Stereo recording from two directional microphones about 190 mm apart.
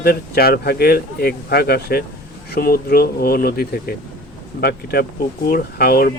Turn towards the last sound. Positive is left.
turn(degrees=55)  # may be behind; listen again after turning